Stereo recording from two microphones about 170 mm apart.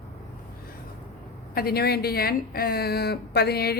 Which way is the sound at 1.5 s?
65° left (ahead or behind).